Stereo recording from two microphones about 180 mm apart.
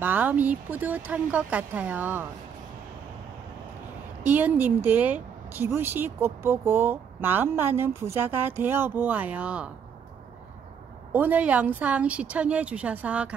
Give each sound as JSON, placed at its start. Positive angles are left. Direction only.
{"t": 0.0, "sound": "a woman's voice", "side_deg": -10}
{"t": 4.2, "sound": "a woman's voice", "side_deg": -10}
{"t": 11.1, "sound": "a woman's voice", "side_deg": -10}